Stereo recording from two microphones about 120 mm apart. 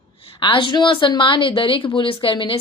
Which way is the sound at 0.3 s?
45° left (ahead or behind).